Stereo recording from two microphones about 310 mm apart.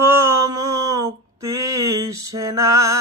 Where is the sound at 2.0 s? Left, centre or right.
Centre.